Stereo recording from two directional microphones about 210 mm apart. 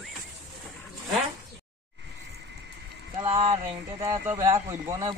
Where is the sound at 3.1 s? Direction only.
25° right (ahead or behind).